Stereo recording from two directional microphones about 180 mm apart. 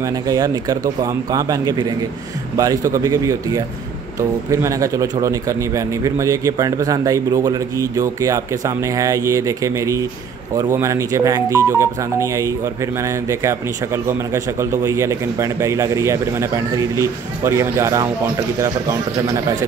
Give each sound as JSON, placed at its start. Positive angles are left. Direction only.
{"t": 0.0, "sound": "a man's voice", "side_deg": -20}